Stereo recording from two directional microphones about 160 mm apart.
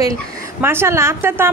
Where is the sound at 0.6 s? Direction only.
15° right (ahead or behind).